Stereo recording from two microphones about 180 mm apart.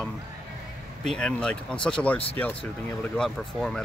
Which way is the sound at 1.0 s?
5° left (ahead or behind).